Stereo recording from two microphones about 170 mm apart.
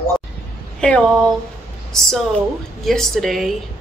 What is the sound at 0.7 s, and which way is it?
Speech, 5° left (ahead or behind).